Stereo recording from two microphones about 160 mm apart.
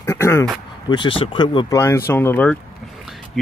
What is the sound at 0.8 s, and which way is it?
Speech, 30° left (ahead or behind).